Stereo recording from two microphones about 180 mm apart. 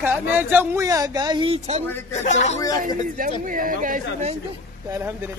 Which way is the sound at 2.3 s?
40° left (ahead or behind).